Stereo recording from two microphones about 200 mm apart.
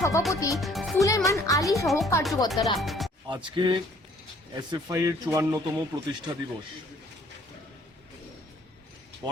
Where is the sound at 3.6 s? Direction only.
25° right (ahead or behind).